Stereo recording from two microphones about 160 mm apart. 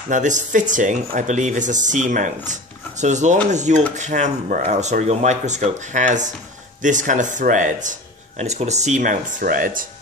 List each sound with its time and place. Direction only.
0.1 s speech: 50° right (ahead or behind)